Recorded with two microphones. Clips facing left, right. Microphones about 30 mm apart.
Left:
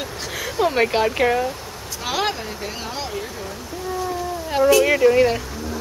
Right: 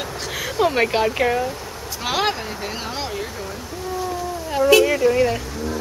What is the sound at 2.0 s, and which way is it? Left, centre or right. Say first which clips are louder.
Speech: right 2 dB; centre.